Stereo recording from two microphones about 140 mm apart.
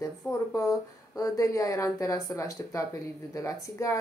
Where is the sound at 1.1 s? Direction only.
25° left (ahead or behind).